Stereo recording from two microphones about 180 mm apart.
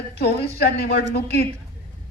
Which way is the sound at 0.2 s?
70° left (ahead or behind).